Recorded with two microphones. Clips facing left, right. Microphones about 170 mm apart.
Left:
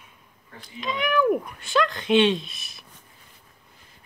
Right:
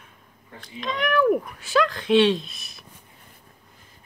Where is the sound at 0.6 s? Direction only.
Centre (ahead or behind).